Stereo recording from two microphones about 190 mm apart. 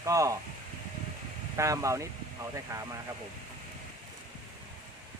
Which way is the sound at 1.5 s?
15° right (ahead or behind).